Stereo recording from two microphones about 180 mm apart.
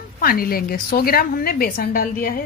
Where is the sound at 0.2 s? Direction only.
55° left (ahead or behind).